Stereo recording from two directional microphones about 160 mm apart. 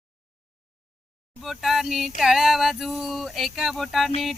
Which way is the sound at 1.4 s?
Centre (ahead or behind).